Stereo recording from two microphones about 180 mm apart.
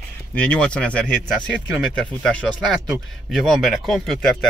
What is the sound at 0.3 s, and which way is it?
Speech, 5° left (ahead or behind).